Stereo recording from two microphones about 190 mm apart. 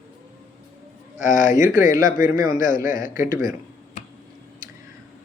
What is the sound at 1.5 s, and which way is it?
Speech, 45° left (ahead or behind).